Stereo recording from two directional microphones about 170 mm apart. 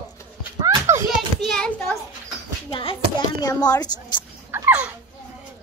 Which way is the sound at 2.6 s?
30° left (ahead or behind).